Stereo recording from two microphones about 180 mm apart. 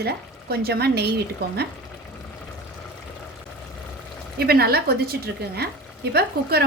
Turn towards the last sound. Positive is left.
turn(degrees=-60)  # may be behind; listen again after turning